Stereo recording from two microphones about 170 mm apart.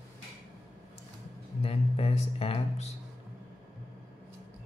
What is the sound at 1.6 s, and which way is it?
Speech, 35° left (ahead or behind).